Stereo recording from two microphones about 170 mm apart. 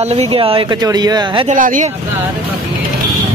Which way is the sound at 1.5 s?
50° right (ahead or behind).